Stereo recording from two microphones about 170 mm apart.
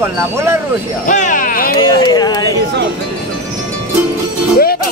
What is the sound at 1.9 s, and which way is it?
Speech, 20° left (ahead or behind).